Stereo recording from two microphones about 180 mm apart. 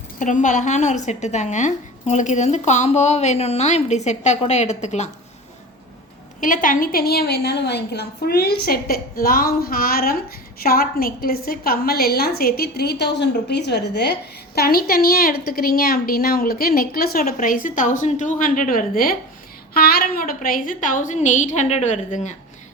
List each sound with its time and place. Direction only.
0.2 s a woman's voice: 45° left (ahead or behind)
6.4 s a woman's voice: 50° left (ahead or behind)